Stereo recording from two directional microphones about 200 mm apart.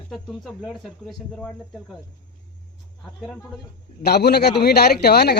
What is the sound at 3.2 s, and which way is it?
Speech, centre (ahead or behind).